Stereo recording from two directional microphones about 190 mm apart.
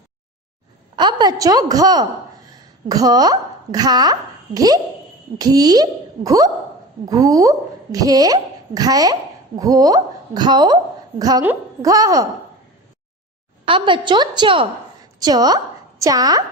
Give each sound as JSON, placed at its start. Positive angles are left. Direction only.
{"t": 0.9, "sound": "a woman's voice", "side_deg": -20}
{"t": 13.7, "sound": "a woman's voice", "side_deg": -25}